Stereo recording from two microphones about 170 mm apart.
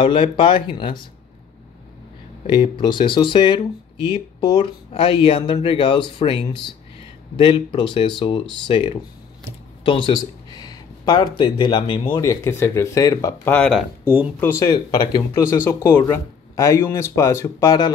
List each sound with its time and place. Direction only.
0.0 s speech: 30° left (ahead or behind)
2.4 s speech: 30° left (ahead or behind)
14.0 s speech: 10° right (ahead or behind)
14.7 s speech: 25° left (ahead or behind)